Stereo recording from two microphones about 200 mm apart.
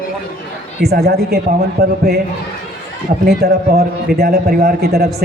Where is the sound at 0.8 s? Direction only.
55° right (ahead or behind).